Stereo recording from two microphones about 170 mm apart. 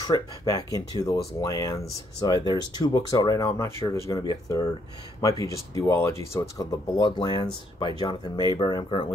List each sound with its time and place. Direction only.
0.0 s speech: 20° left (ahead or behind)